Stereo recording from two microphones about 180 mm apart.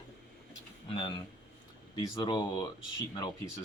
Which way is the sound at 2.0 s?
25° left (ahead or behind).